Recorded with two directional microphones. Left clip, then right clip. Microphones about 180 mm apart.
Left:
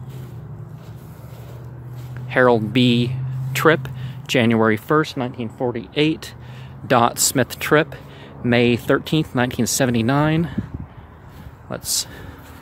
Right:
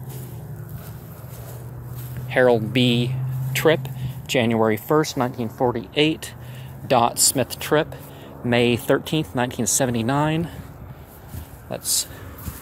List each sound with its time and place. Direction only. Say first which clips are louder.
2.2 s speech: left 2 dB; 30° left (ahead or behind)
5.0 s speech: right 2 dB; 15° left (ahead or behind)
5.9 s speech: left 3 dB; 30° left (ahead or behind)
11.7 s speech: left 1 dB; 35° left (ahead or behind)